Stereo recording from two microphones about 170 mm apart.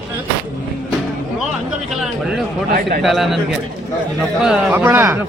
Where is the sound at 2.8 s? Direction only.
60° right (ahead or behind).